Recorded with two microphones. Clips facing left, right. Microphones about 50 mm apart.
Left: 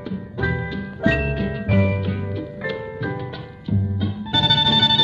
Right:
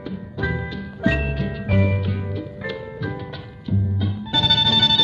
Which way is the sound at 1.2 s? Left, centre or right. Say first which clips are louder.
Left 2 dB; centre.